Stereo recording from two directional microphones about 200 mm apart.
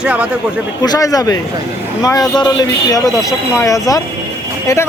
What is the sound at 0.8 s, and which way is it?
Speech, 20° left (ahead or behind).